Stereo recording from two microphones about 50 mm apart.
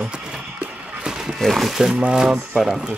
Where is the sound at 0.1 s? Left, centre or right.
Centre.